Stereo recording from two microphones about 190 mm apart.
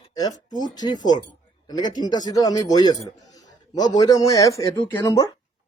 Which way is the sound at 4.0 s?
20° left (ahead or behind).